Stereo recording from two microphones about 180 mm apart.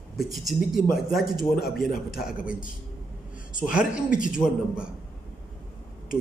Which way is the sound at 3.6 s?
5° right (ahead or behind).